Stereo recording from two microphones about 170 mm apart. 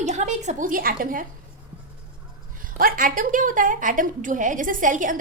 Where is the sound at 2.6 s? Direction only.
55° right (ahead or behind).